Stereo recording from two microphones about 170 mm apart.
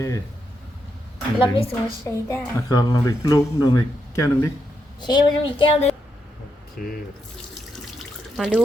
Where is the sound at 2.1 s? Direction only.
15° left (ahead or behind).